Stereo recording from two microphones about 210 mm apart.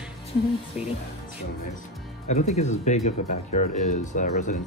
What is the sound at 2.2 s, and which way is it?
Speech, 35° left (ahead or behind).